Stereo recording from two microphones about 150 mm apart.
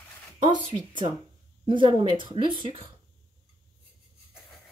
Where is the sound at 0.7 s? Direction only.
30° right (ahead or behind).